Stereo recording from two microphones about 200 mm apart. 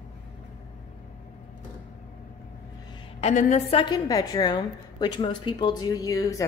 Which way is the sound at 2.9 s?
30° left (ahead or behind).